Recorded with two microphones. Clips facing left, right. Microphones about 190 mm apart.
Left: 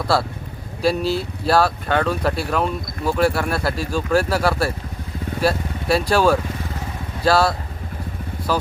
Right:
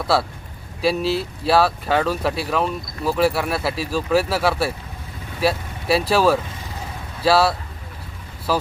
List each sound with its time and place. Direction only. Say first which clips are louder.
0.1 s speech: right 1 dB; centre (ahead or behind)